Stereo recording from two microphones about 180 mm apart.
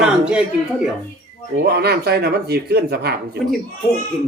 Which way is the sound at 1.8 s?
65° right (ahead or behind).